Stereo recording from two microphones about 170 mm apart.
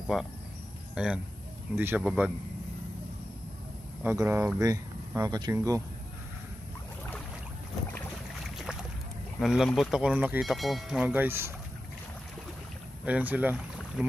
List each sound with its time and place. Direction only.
0.1 s speech: centre (ahead or behind)
4.0 s speech: 10° right (ahead or behind)
9.4 s speech: centre (ahead or behind)
13.0 s speech: 10° right (ahead or behind)